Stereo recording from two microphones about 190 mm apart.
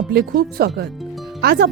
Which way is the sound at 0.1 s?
55° right (ahead or behind).